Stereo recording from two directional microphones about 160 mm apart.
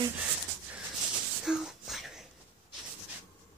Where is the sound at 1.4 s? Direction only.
5° right (ahead or behind).